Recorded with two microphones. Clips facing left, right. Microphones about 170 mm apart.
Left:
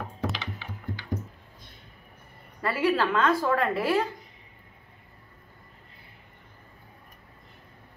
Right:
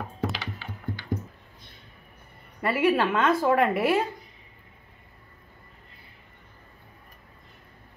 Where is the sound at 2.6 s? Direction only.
25° right (ahead or behind).